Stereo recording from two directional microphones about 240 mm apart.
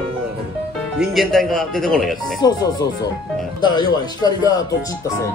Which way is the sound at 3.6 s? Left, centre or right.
Centre.